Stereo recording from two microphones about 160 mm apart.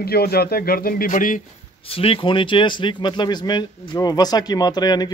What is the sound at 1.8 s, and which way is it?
Speech, 35° left (ahead or behind).